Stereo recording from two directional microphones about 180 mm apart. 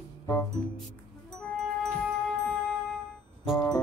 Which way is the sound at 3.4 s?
Centre (ahead or behind).